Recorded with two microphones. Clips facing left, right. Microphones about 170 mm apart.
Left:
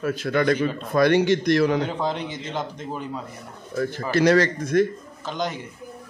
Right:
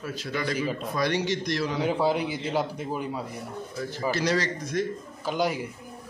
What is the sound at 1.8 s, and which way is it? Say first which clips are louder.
Speech: right 1 dB; 10° right (ahead or behind).